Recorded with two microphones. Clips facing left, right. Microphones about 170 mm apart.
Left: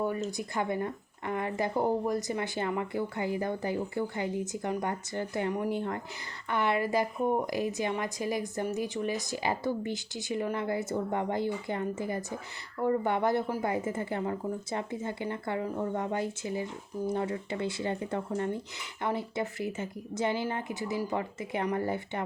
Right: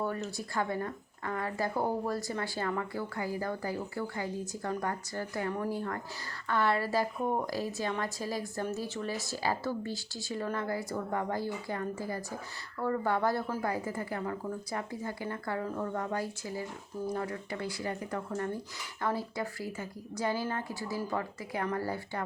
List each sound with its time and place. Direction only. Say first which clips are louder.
0.0 s speech: left 3 dB; 15° left (ahead or behind)